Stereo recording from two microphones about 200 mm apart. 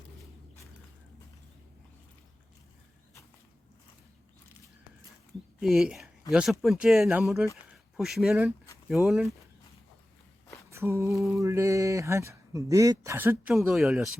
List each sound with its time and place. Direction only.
5.5 s speech: 5° right (ahead or behind)
10.7 s a sound: 15° right (ahead or behind)
11.3 s speech: 15° right (ahead or behind)